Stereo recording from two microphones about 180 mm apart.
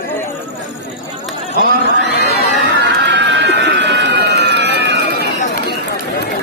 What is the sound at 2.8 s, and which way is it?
Run, 75° right (ahead or behind).